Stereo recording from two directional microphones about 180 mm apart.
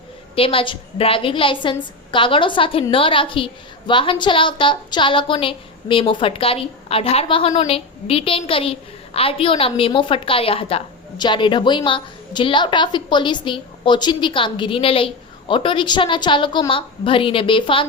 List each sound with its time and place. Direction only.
0.3 s a woman's voice: 30° left (ahead or behind)